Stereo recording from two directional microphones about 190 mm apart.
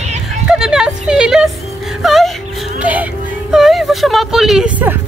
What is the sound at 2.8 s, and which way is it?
Music, 10° right (ahead or behind).